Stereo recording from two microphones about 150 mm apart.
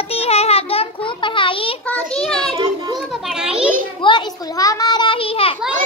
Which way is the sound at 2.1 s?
5° left (ahead or behind).